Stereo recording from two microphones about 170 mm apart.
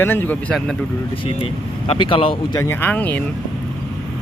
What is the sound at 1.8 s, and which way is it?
Speech, 30° left (ahead or behind).